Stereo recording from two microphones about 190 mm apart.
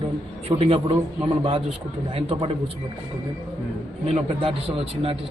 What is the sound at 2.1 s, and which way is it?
Speech, 30° right (ahead or behind).